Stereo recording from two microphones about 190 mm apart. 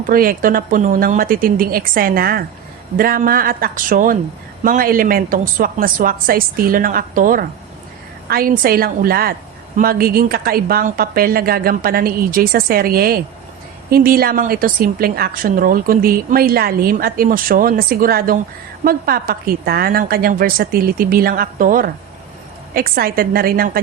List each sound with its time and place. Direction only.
0.1 s a woman's voice: 50° right (ahead or behind)